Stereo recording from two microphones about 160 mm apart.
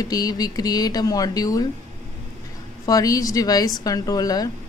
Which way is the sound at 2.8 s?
20° left (ahead or behind).